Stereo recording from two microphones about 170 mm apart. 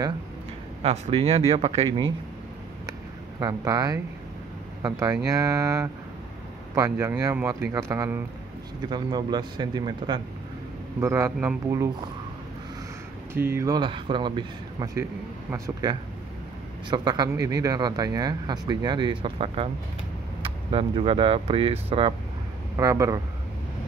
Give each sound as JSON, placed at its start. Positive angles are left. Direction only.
{"t": 0.8, "sound": "speech", "side_deg": -35}
{"t": 2.9, "sound": "a sound", "side_deg": -20}
{"t": 4.8, "sound": "speech", "side_deg": -20}
{"t": 11.0, "sound": "speech", "side_deg": -15}
{"t": 13.3, "sound": "speech", "side_deg": -15}
{"t": 13.7, "sound": "speech", "side_deg": -30}
{"t": 22.8, "sound": "speech", "side_deg": -20}